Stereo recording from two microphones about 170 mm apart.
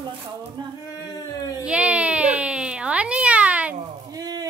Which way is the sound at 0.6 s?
25° right (ahead or behind).